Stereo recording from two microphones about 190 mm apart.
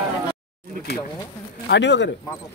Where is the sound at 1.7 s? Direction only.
70° left (ahead or behind).